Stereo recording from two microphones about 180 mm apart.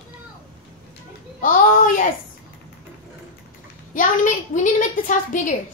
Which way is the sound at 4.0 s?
45° left (ahead or behind).